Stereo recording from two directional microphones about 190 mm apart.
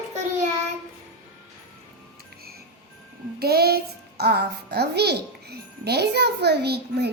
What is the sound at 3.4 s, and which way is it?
A child's voice, 55° right (ahead or behind).